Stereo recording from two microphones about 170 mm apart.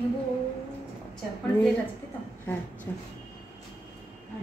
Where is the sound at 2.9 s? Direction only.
15° left (ahead or behind).